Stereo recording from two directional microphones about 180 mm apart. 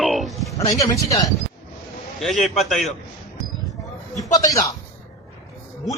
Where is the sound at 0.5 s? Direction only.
20° left (ahead or behind).